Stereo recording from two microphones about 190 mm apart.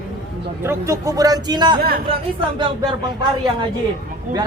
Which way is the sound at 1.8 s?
55° right (ahead or behind).